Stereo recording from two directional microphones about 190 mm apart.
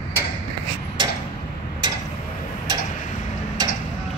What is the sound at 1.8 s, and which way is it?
Tick-tock, 25° right (ahead or behind).